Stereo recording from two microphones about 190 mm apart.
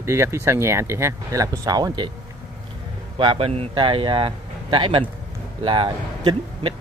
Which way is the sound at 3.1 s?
30° right (ahead or behind).